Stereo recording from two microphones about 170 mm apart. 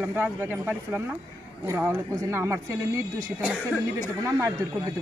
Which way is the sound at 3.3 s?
Centre (ahead or behind).